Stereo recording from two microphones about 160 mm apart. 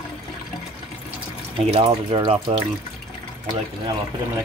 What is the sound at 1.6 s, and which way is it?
Speech, 40° right (ahead or behind).